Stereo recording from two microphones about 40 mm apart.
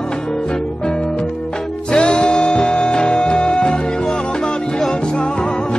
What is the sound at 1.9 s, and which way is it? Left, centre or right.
Music, left.